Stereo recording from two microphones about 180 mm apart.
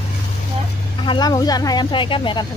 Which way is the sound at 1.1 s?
20° left (ahead or behind).